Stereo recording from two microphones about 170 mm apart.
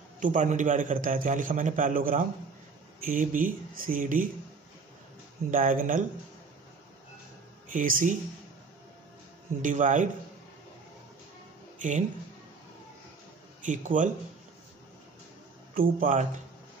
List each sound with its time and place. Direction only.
0.2 s a man's voice: 50° right (ahead or behind)
5.5 s a man's voice: 50° right (ahead or behind)
7.6 s a man's voice: 50° right (ahead or behind)
9.6 s a man's voice: 50° right (ahead or behind)
11.8 s speech: 50° right (ahead or behind)
13.6 s speech: 50° right (ahead or behind)
15.7 s a man's voice: 55° right (ahead or behind)